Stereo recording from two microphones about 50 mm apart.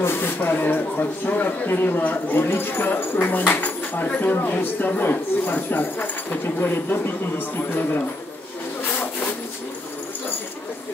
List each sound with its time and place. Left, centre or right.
0.0 s speech: left